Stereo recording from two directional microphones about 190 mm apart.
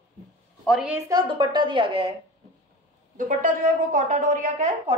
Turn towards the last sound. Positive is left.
turn(degrees=-40)  # may be behind; listen again after turning